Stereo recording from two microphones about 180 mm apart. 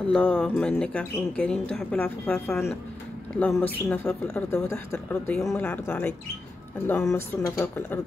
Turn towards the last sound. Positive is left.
turn(degrees=10)  # may be behind; listen again after turning